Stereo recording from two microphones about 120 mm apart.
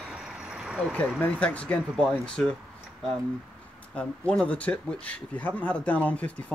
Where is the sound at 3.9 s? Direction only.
10° left (ahead or behind).